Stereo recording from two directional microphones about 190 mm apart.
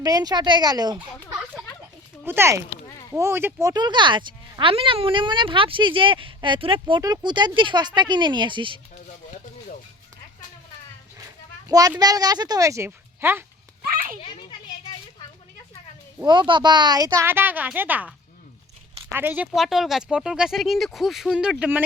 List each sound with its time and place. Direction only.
0.0 s speech: 20° right (ahead or behind)
2.2 s a woman's voice: 10° right (ahead or behind)
11.7 s speech: 20° right (ahead or behind)
13.8 s children playing: 50° right (ahead or behind)
16.2 s a woman's voice: 25° right (ahead or behind); by 21.8 s 5° right (ahead or behind)